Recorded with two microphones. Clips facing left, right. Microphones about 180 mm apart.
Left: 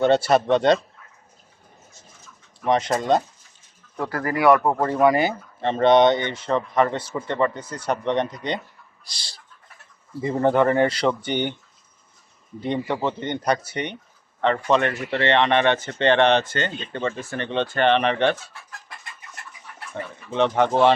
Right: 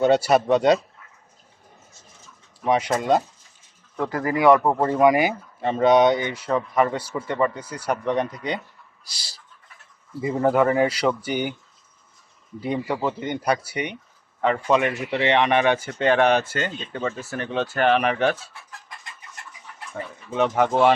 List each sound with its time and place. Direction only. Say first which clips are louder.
0.0 s speech: even; 10° right (ahead or behind)
2.6 s speech: even; 10° right (ahead or behind)
12.5 s speech: left 1 dB; 5° right (ahead or behind)
19.9 s speech: left 1 dB; 5° right (ahead or behind)